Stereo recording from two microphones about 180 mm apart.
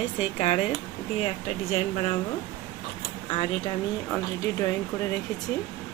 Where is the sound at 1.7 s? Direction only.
35° left (ahead or behind).